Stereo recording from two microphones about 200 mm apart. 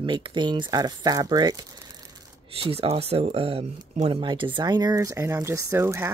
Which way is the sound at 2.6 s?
30° right (ahead or behind).